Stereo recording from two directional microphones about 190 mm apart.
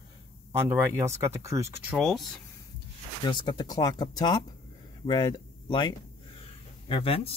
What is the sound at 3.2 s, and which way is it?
Speech, 25° left (ahead or behind).